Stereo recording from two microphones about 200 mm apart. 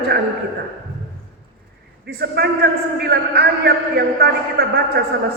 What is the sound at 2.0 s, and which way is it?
A man's voice, 50° right (ahead or behind).